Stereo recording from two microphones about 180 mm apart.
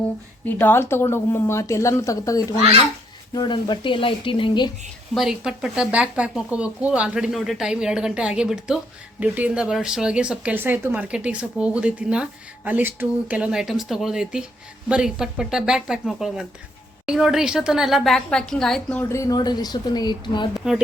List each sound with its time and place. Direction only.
0.4 s speech: 10° left (ahead or behind); by 4.7 s 25° left (ahead or behind)
5.1 s speech: 5° right (ahead or behind); by 20.5 s 25° left (ahead or behind)